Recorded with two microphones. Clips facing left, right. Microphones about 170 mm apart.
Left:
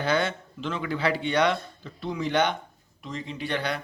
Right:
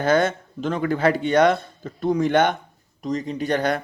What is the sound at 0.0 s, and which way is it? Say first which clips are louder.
Speech: right 6 dB; 45° right (ahead or behind).